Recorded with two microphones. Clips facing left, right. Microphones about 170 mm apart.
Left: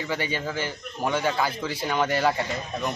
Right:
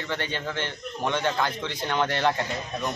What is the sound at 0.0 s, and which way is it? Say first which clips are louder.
A man's voice: left 2 dB; 10° left (ahead or behind).